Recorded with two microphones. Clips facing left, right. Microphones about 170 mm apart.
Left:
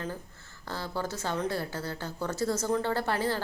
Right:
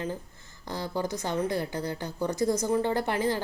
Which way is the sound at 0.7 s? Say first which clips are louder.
Right 3 dB; 15° right (ahead or behind).